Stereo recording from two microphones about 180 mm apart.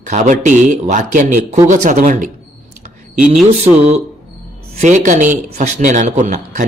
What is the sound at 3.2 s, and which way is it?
Speech, 5° right (ahead or behind).